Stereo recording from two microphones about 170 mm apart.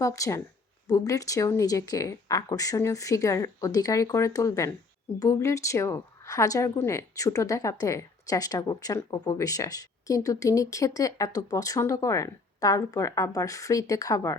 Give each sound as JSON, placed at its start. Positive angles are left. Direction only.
{"t": 0.0, "sound": "a woman's voice", "side_deg": 20}